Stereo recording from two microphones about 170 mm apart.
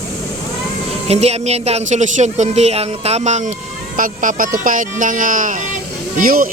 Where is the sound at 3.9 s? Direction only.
50° right (ahead or behind).